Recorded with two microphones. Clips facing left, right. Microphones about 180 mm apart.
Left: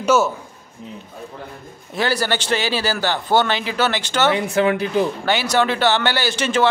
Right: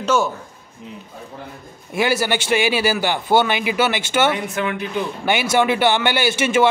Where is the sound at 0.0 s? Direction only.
5° left (ahead or behind).